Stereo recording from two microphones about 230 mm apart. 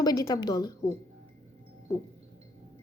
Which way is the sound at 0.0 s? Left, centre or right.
Centre.